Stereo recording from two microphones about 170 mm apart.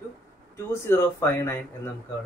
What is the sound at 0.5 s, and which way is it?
Speech, 15° left (ahead or behind).